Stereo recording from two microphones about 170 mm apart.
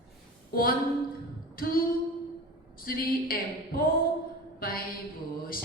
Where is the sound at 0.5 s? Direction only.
60° left (ahead or behind).